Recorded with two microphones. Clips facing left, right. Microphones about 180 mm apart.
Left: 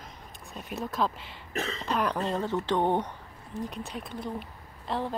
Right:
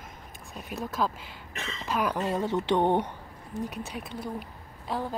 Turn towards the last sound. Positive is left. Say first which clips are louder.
# even
turn(degrees=0)  # may be behind; listen again after turning